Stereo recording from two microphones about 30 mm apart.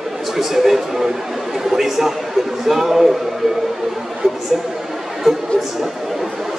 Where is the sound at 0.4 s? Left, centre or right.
Centre.